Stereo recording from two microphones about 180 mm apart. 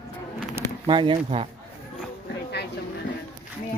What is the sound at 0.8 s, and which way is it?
Speech, 25° right (ahead or behind).